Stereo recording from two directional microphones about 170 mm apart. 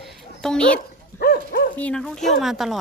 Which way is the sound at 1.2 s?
60° left (ahead or behind).